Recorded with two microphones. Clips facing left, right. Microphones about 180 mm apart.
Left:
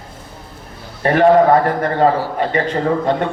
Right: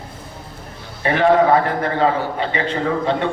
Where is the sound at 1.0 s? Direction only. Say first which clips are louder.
Left 4 dB; 45° left (ahead or behind).